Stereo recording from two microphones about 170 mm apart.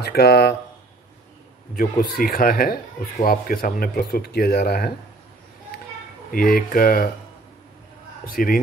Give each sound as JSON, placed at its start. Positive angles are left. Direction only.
{"t": 0.0, "sound": "speech", "side_deg": 70}
{"t": 2.1, "sound": "speech", "side_deg": 60}
{"t": 6.3, "sound": "speech", "side_deg": 60}
{"t": 8.3, "sound": "speech", "side_deg": 60}